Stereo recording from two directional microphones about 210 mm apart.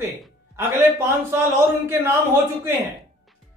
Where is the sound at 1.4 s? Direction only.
10° right (ahead or behind).